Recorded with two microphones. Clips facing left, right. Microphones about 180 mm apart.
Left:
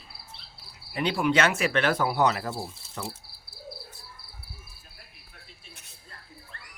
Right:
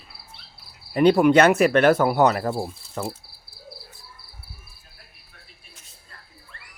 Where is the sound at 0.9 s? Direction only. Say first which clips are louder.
Right 9 dB; 45° right (ahead or behind).